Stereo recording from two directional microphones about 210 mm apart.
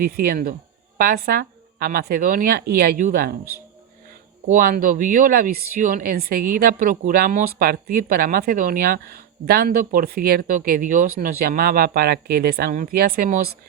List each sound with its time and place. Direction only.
0.0 s speech: 45° right (ahead or behind)
4.4 s speech: 45° right (ahead or behind)